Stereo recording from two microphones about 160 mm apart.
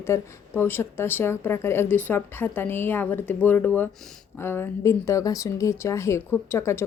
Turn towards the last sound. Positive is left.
turn(degrees=15)  # may be behind; listen again after turning